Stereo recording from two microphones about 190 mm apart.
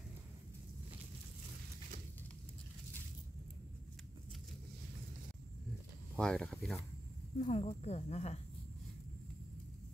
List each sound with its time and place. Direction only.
6.1 s speech: 5° left (ahead or behind)
7.3 s speech: 35° left (ahead or behind)